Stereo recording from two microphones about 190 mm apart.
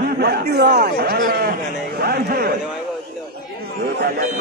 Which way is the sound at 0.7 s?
40° right (ahead or behind).